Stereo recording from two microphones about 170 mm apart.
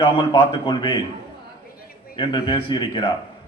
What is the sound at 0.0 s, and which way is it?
Speech, 25° left (ahead or behind).